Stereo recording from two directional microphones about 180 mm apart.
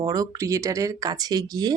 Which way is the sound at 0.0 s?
20° right (ahead or behind).